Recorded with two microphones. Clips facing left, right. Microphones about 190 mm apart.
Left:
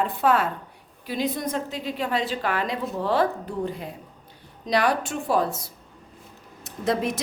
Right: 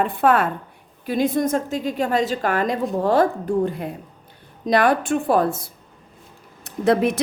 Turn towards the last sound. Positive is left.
turn(degrees=-60)  # may be behind; listen again after turning